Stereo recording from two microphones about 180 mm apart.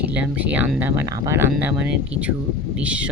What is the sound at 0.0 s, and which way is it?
Speech, 10° right (ahead or behind).